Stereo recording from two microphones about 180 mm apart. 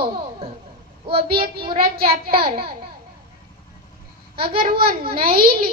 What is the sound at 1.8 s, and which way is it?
Speech, 55° right (ahead or behind).